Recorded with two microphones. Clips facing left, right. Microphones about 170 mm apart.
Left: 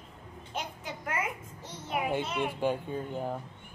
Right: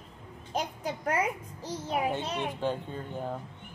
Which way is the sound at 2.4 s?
10° left (ahead or behind).